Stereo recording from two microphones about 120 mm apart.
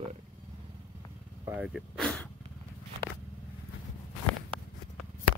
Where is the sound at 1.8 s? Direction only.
5° left (ahead or behind).